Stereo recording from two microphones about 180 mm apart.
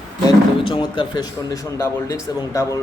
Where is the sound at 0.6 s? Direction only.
25° left (ahead or behind).